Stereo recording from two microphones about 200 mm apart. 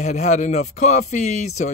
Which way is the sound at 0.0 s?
35° left (ahead or behind).